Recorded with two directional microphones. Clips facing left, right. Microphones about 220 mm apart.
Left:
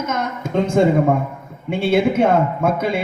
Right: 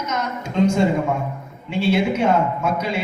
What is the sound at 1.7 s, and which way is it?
A man's voice, 55° left (ahead or behind).